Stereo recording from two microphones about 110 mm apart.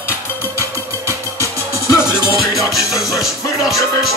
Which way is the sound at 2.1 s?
40° right (ahead or behind).